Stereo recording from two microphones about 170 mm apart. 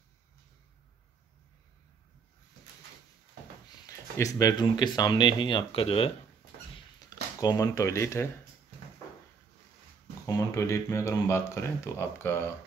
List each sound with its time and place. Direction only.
3.6 s speech: 25° left (ahead or behind)
7.3 s speech: 20° left (ahead or behind)
10.2 s speech: 20° left (ahead or behind)